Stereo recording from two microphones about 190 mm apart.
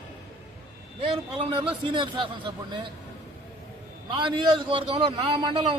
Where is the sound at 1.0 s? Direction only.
30° right (ahead or behind).